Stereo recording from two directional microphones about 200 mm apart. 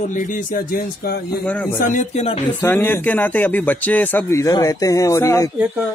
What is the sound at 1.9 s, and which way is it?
Speech, 35° left (ahead or behind).